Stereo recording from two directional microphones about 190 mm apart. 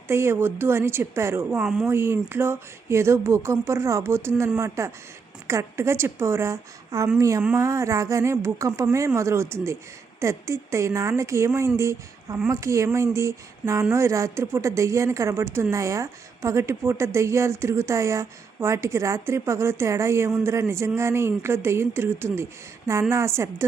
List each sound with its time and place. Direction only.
0.1 s a woman's voice: 15° right (ahead or behind)